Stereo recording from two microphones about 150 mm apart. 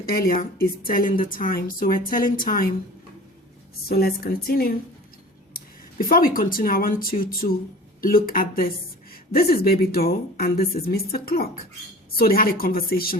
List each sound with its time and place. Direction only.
0.0 s a woman's voice: 80° left
3.8 s a woman's voice: 90° left
5.5 s a woman's voice: 75° left (ahead or behind)
9.3 s a woman's voice: 90° left